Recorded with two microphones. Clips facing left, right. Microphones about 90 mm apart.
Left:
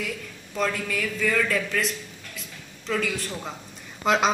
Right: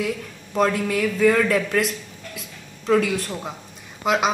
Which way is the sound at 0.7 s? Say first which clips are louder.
Right 7 dB; 10° right (ahead or behind).